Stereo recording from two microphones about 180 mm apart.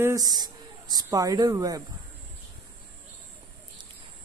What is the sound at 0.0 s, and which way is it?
Speech, 20° right (ahead or behind).